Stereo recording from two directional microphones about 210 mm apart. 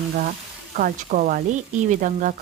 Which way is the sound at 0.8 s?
45° right (ahead or behind).